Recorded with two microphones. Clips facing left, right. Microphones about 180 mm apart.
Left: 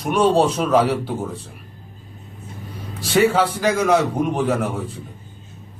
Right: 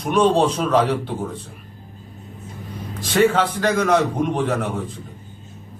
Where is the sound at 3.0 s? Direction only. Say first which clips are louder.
Even; 10° left (ahead or behind).